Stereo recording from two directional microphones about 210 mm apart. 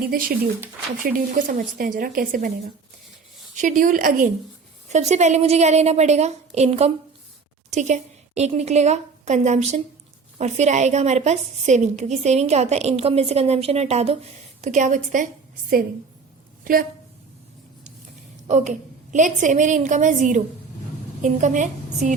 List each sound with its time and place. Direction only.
0.1 s speech: 45° right (ahead or behind)
3.5 s a woman's voice: 35° right (ahead or behind)
18.4 s a woman's voice: 35° right (ahead or behind)